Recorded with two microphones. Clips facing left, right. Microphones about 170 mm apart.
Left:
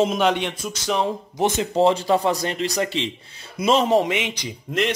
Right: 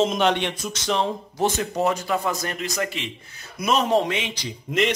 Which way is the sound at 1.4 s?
25° left (ahead or behind).